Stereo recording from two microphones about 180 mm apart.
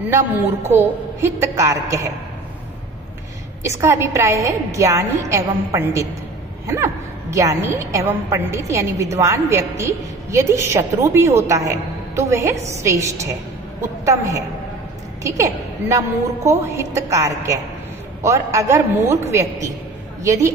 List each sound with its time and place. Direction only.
0.0 s a woman's voice: 10° right (ahead or behind)
3.6 s a woman's voice: 15° right (ahead or behind)
20.2 s a woman's voice: 15° right (ahead or behind)